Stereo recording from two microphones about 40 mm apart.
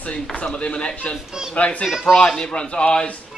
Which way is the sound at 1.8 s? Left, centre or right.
Centre.